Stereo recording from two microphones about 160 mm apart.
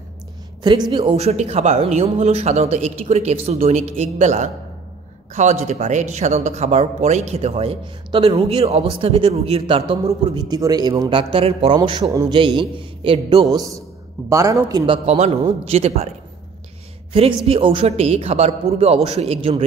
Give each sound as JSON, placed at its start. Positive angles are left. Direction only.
{"t": 0.7, "sound": "speech", "side_deg": -30}
{"t": 12.4, "sound": "speech", "side_deg": -30}
{"t": 15.0, "sound": "speech", "side_deg": -40}
{"t": 17.1, "sound": "speech", "side_deg": -35}